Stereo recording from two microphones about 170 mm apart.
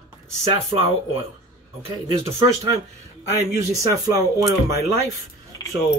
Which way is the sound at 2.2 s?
15° right (ahead or behind).